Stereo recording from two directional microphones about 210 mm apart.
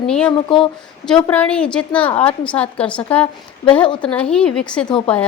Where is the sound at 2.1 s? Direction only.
30° left (ahead or behind).